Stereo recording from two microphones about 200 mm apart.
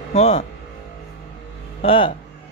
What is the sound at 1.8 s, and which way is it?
Speech, 25° left (ahead or behind).